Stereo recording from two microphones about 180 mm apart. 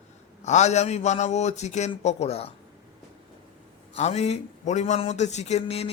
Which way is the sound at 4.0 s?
40° left (ahead or behind).